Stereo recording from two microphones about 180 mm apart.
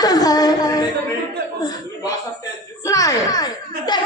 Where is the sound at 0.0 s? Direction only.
20° left (ahead or behind).